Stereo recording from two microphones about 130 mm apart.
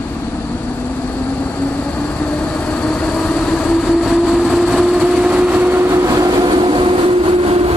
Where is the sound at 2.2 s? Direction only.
10° left (ahead or behind).